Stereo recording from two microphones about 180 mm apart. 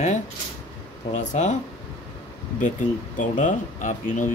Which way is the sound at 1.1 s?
40° left (ahead or behind).